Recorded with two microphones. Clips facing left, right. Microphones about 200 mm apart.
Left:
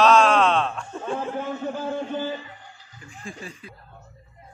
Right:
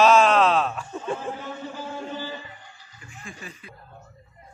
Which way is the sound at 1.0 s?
55° left (ahead or behind).